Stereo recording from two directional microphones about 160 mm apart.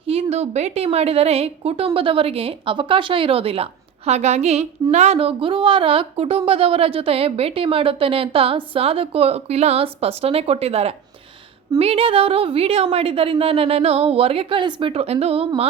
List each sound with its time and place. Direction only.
0.1 s speech: 40° right (ahead or behind)